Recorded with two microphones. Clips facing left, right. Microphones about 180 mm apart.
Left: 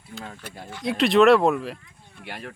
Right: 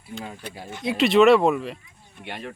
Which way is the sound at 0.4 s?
Centre (ahead or behind).